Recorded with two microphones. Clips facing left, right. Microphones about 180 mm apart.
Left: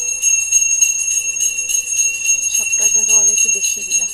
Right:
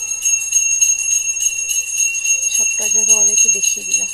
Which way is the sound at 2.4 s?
10° right (ahead or behind).